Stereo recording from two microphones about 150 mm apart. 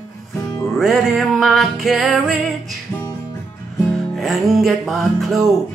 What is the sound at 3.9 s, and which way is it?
Music, centre (ahead or behind).